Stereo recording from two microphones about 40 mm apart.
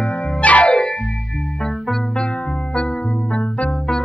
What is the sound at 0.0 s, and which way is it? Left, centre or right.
Music, left.